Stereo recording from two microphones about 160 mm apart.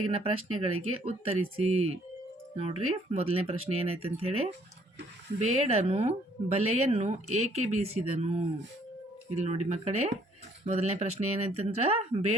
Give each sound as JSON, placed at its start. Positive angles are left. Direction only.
{"t": 0.0, "sound": "speech", "side_deg": -35}